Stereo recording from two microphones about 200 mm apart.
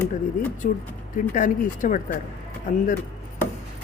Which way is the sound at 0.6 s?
40° left (ahead or behind).